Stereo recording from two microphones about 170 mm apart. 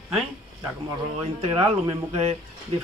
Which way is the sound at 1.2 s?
35° right (ahead or behind).